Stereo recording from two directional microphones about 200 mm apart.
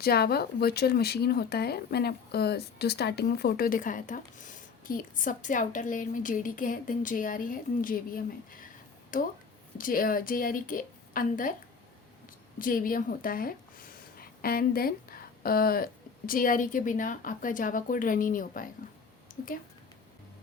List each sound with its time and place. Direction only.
0.0 s speech: 50° left (ahead or behind)
12.5 s speech: 45° left (ahead or behind)
19.3 s a sound: 40° left (ahead or behind)